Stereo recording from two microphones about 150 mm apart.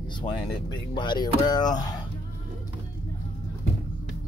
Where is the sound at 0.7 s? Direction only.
30° left (ahead or behind).